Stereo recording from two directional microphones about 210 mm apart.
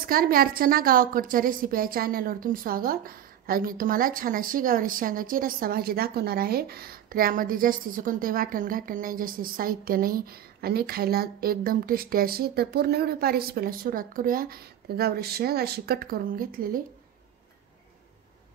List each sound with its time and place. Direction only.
0.0 s a woman's voice: 45° right (ahead or behind)